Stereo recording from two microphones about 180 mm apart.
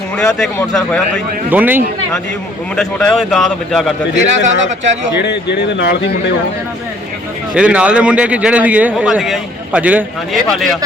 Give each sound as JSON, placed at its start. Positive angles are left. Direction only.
{"t": 0.2, "sound": "a man's voice", "side_deg": 5}
{"t": 1.5, "sound": "a man's voice", "side_deg": -10}
{"t": 2.7, "sound": "a man's voice", "side_deg": 5}
{"t": 4.1, "sound": "speech", "side_deg": -40}
{"t": 5.2, "sound": "speech", "side_deg": 70}
{"t": 7.5, "sound": "a man's voice", "side_deg": -5}